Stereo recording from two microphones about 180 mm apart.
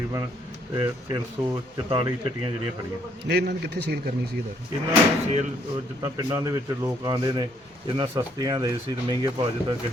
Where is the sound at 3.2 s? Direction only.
65° right (ahead or behind).